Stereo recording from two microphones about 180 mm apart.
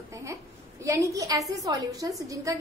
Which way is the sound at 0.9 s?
15° right (ahead or behind).